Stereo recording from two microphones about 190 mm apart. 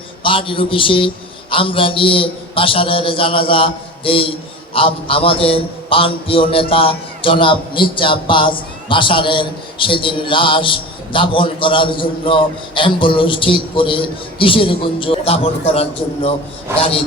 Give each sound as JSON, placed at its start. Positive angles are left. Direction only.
{"t": 0.2, "sound": "a man's voice", "side_deg": 25}